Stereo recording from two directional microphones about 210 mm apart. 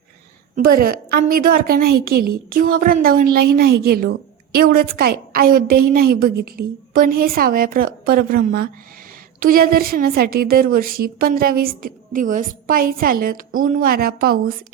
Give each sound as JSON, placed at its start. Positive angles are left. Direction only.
{"t": 0.5, "sound": "a woman's voice", "side_deg": -45}